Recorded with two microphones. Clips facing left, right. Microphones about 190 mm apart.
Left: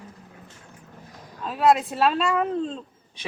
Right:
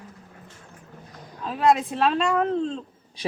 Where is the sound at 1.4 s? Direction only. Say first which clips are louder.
Left 1 dB; centre (ahead or behind).